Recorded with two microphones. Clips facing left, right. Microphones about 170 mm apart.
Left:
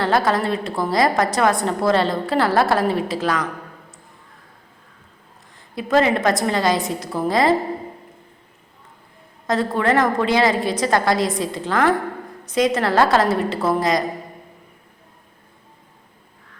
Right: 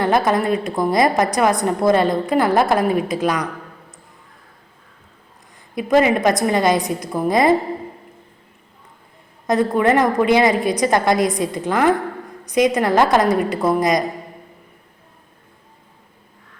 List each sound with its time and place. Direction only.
0.0 s a woman's voice: 20° right (ahead or behind)
5.7 s a woman's voice: 15° right (ahead or behind)
9.5 s a woman's voice: 20° right (ahead or behind)